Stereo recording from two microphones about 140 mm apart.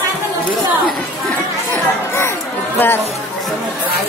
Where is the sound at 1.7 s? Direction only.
20° left (ahead or behind).